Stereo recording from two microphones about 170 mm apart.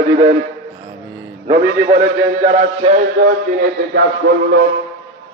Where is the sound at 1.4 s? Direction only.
35° right (ahead or behind).